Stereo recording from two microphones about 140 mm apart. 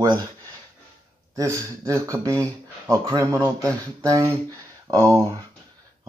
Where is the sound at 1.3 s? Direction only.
20° right (ahead or behind).